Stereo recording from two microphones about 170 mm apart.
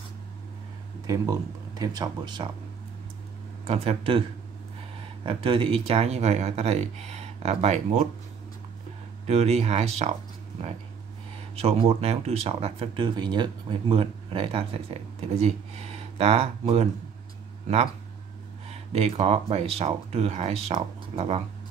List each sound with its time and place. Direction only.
1.0 s speech: 20° right (ahead or behind)
3.6 s speech: 35° right (ahead or behind)
5.2 s speech: 30° right (ahead or behind)
9.3 s speech: 40° right (ahead or behind)
11.5 s speech: 35° right (ahead or behind)
18.7 s speech: 35° right (ahead or behind)